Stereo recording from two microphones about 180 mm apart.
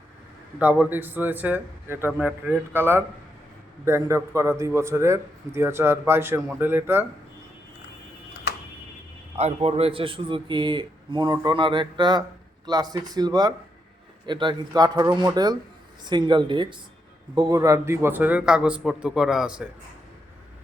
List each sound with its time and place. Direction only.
0.6 s a man's voice: 10° right (ahead or behind)
9.4 s a man's voice: 35° right (ahead or behind); by 19.6 s 5° right (ahead or behind)